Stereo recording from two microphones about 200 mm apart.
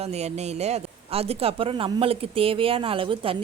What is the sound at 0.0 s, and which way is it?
Speech, 35° right (ahead or behind).